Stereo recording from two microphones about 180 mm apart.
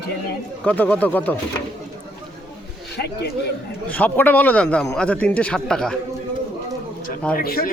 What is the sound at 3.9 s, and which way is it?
A man's voice, 10° left (ahead or behind).